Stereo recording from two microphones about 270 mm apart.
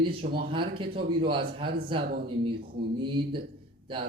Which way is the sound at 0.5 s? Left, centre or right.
Centre.